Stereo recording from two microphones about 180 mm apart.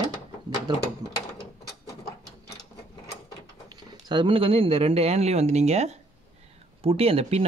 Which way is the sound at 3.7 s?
25° right (ahead or behind).